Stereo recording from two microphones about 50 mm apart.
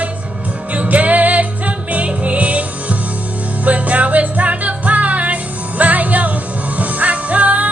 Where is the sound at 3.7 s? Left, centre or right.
Right.